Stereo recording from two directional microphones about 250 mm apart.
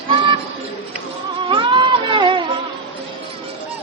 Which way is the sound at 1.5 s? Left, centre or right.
Centre.